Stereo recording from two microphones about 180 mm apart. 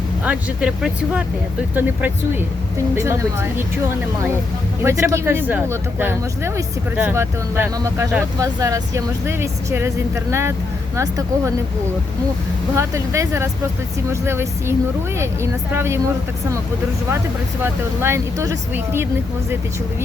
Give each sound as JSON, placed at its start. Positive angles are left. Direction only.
{"t": 0.3, "sound": "speech", "side_deg": -5}
{"t": 4.8, "sound": "speech", "side_deg": -15}
{"t": 10.9, "sound": "speech", "side_deg": -15}
{"t": 12.7, "sound": "speech", "side_deg": -15}
{"t": 17.6, "sound": "speech", "side_deg": -15}